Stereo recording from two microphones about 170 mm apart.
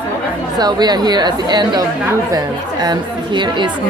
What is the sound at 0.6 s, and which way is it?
Speech, 25° right (ahead or behind).